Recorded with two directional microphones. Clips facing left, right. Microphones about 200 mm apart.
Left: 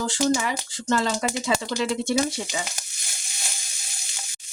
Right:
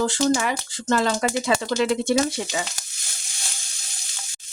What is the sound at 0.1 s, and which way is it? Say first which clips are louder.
Speech: right 2 dB; 60° right (ahead or behind).